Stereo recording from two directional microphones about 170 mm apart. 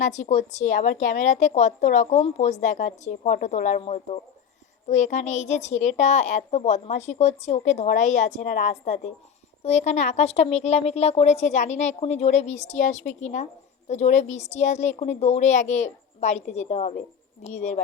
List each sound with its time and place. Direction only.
0.0 s a woman's voice: 45° left (ahead or behind)